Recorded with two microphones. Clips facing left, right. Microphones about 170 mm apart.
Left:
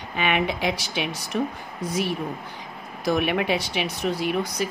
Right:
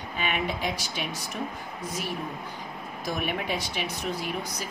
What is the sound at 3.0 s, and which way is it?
Speech, 80° left.